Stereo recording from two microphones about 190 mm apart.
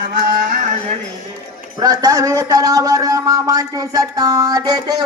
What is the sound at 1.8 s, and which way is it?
A man's voice, 20° right (ahead or behind).